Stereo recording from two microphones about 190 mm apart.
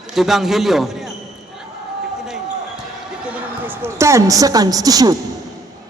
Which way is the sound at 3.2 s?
10° right (ahead or behind).